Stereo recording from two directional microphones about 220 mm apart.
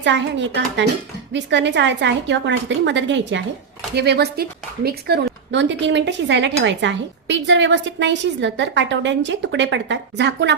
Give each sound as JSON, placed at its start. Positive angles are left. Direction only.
{"t": 0.0, "sound": "a woman's voice", "side_deg": -55}